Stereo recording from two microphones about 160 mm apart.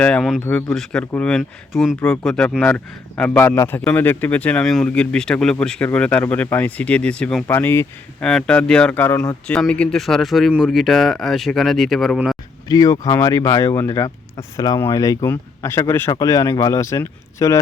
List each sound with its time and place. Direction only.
0.0 s speech: 5° left (ahead or behind)
0.4 s speech: 15° left (ahead or behind)
0.8 s speech: 5° left (ahead or behind)
9.5 s speech: 5° left (ahead or behind)
12.6 s speech: 25° left (ahead or behind)